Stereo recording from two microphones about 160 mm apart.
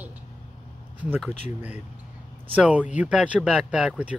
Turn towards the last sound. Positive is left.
turn(degrees=-5)  # may be behind; listen again after turning